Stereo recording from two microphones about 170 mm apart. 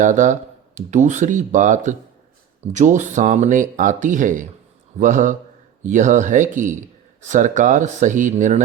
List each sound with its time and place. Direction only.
0.0 s speech: 45° right (ahead or behind)